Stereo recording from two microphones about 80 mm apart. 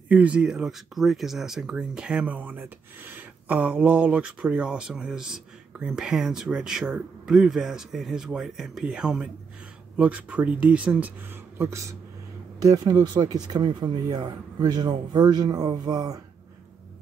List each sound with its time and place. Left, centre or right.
0.1 s speech: centre
11.5 s speech: right
12.5 s speech: right